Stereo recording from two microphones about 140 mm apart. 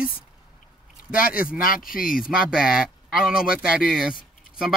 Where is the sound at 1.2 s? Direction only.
90° left.